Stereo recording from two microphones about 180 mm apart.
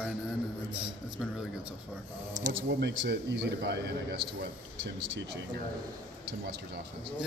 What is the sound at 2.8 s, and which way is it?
Speech, 70° right (ahead or behind).